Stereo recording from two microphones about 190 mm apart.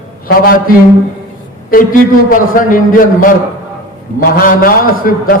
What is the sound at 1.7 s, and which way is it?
A man's voice, 45° left (ahead or behind).